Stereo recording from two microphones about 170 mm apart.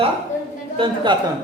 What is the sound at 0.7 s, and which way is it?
Speech, 30° right (ahead or behind).